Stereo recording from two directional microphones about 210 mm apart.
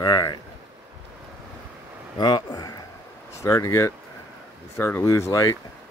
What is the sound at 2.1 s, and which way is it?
A man's voice, 20° left (ahead or behind).